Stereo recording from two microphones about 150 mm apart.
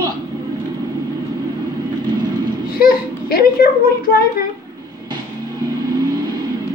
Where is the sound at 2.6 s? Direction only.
90° left.